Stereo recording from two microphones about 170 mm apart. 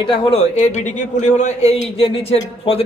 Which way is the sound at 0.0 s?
30° left (ahead or behind).